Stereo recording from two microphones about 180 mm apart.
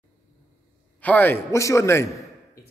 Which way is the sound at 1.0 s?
10° left (ahead or behind).